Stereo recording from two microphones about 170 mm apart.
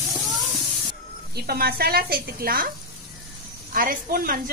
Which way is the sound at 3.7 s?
60° right (ahead or behind).